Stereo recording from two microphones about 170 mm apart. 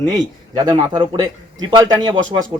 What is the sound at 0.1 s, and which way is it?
Speech, 25° right (ahead or behind).